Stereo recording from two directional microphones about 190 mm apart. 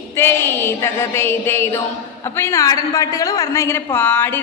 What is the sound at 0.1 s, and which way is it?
A woman's voice, 10° left (ahead or behind).